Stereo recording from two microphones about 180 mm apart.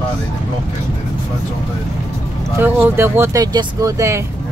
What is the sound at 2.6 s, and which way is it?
Speech, 10° right (ahead or behind).